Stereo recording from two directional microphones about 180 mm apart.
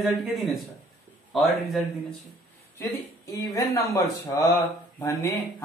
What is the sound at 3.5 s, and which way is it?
Speech, 20° left (ahead or behind).